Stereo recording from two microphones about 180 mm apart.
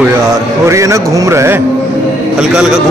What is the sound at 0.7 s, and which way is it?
Speech, 15° right (ahead or behind).